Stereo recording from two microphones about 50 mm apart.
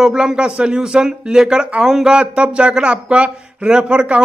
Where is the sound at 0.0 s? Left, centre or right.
Centre.